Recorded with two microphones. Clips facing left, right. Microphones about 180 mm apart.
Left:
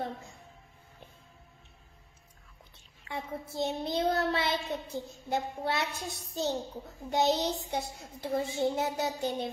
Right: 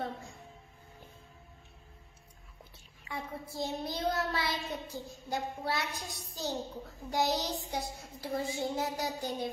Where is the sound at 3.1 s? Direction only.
20° left (ahead or behind).